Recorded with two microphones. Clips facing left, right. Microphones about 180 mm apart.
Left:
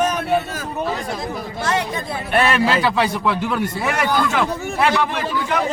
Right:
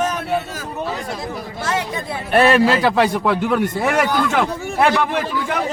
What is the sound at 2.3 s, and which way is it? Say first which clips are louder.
A man's voice: right 4 dB; 40° right (ahead or behind).